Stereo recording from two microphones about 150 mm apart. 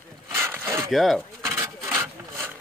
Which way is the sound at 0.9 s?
Centre (ahead or behind).